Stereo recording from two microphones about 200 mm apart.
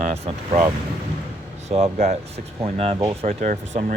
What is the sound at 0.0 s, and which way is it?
Speech, 30° right (ahead or behind).